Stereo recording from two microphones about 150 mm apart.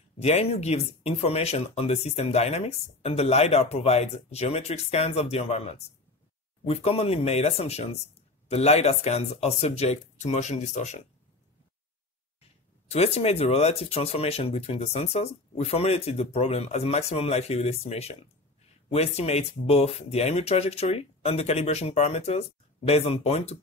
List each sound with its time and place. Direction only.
0.2 s speech: 45° left (ahead or behind)
12.9 s speech: 45° left (ahead or behind)